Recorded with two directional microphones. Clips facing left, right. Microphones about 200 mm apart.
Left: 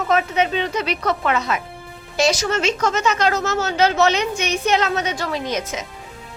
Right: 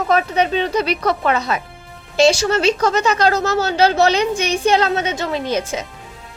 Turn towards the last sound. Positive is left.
turn(degrees=-30)  # may be behind; listen again after turning